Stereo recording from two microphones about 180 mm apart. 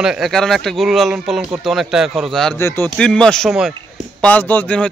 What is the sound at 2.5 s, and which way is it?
Speech, 15° left (ahead or behind).